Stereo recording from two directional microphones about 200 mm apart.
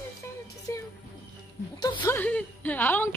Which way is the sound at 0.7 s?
15° left (ahead or behind).